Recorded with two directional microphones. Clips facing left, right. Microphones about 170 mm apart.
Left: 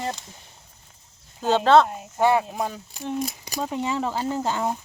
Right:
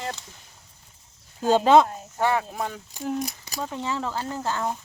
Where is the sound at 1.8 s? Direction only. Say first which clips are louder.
Left 4 dB; 15° left (ahead or behind).